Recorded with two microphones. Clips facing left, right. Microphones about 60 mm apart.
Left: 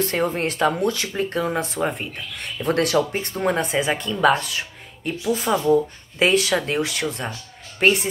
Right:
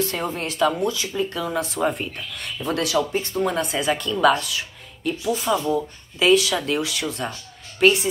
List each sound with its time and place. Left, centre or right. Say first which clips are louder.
0.1 s speech: left 4 dB; left
0.8 s speech: left 1 dB; left
1.8 s speech: right 1 dB; centre
2.6 s speech: left 3 dB; left
4.4 s a sound: even; left
5.4 s speech: left 6 dB; left